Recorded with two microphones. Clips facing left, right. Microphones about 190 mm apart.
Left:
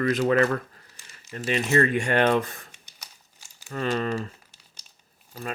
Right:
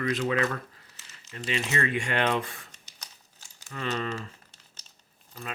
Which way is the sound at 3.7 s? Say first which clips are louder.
Left 5 dB; 45° left (ahead or behind).